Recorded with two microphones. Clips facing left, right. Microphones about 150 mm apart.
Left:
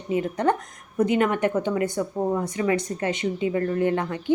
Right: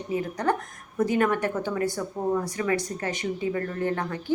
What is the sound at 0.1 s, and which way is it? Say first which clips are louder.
A woman's voice: left 4 dB; 25° left (ahead or behind).